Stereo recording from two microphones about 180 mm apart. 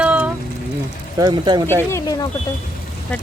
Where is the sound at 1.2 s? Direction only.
25° right (ahead or behind).